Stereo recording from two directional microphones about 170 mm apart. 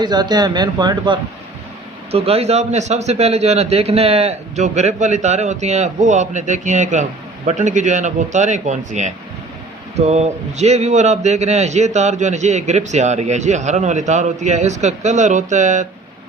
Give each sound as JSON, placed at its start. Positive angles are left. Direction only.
{"t": 0.0, "sound": "a man's voice", "side_deg": -25}